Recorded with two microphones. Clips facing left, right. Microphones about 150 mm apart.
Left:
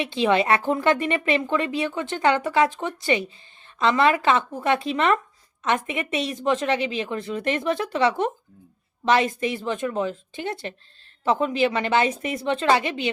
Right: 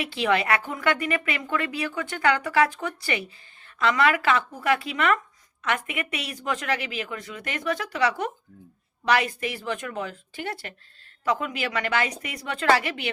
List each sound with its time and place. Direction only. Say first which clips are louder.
0.0 s a woman's voice: left 4 dB; 25° left (ahead or behind)